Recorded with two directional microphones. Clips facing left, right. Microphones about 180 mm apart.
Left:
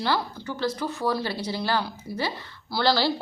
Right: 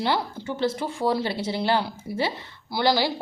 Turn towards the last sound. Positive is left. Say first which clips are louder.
# right 1 dB
turn(degrees=-15)  # may be behind; listen again after turning